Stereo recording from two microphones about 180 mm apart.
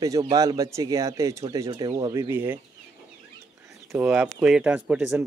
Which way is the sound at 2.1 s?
15° right (ahead or behind).